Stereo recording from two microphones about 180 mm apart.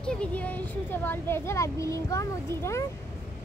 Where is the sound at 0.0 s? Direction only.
5° left (ahead or behind).